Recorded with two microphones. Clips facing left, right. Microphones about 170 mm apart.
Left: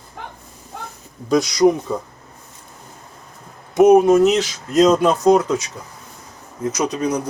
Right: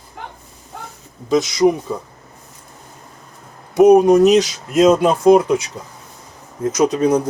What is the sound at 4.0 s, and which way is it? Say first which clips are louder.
Speech: right 3 dB; 15° right (ahead or behind).